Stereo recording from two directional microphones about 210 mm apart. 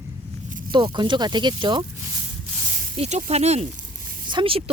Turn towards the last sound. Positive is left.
turn(degrees=-25)  # may be behind; listen again after turning